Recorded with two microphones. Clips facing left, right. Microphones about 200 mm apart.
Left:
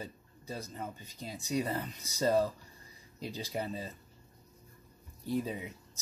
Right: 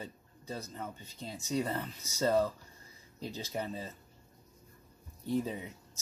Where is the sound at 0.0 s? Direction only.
10° left (ahead or behind).